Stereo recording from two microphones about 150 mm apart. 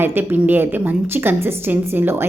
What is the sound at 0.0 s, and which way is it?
A woman's voice, 15° right (ahead or behind).